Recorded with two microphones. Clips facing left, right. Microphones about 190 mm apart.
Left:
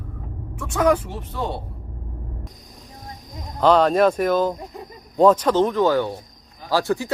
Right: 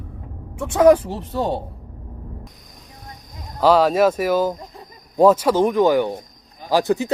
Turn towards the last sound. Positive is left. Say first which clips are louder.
# right 3 dB
turn(degrees=-20)  # may be behind; listen again after turning